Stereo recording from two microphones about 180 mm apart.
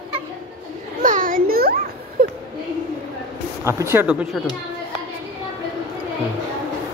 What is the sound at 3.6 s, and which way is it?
Speech, 15° right (ahead or behind).